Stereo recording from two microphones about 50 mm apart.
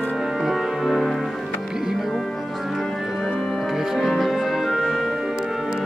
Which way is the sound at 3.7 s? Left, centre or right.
Centre.